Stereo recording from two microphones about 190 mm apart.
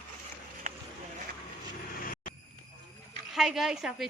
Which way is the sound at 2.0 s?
45° left (ahead or behind).